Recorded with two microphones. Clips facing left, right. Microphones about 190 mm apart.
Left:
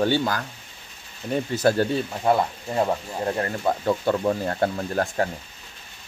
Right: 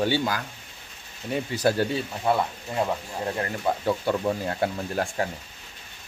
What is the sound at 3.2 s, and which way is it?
Speech, 35° left (ahead or behind).